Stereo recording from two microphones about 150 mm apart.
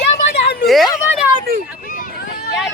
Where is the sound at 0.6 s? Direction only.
Centre (ahead or behind).